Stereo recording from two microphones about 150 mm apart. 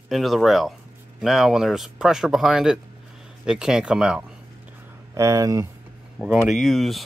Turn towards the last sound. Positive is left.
turn(degrees=0)  # may be behind; listen again after turning